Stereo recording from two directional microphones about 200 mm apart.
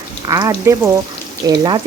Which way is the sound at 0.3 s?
15° right (ahead or behind).